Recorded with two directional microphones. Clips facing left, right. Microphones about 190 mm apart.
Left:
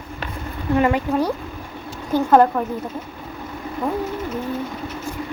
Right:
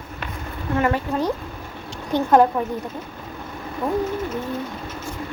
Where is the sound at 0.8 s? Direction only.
15° left (ahead or behind).